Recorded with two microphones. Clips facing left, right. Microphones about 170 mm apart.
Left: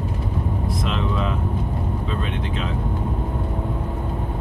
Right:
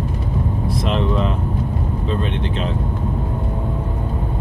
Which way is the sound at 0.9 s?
30° right (ahead or behind).